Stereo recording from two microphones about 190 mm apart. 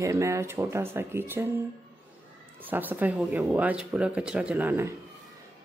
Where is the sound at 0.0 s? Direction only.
15° right (ahead or behind).